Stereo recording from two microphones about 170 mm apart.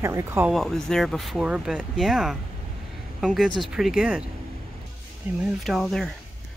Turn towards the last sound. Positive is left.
turn(degrees=0)  # may be behind; listen again after turning